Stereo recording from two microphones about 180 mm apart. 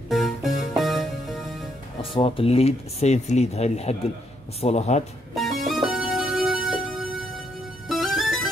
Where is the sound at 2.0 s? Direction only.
30° left (ahead or behind).